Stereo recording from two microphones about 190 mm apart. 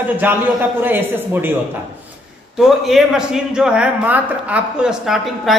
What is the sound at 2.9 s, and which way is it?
A woman's voice, centre (ahead or behind).